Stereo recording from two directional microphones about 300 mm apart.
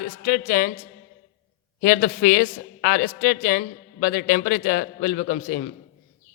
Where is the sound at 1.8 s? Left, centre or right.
Left.